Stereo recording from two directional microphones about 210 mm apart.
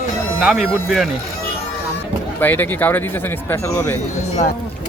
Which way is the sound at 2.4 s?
10° left (ahead or behind).